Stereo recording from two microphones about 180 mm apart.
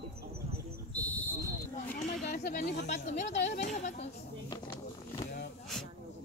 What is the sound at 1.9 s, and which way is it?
Chatter, 45° left (ahead or behind).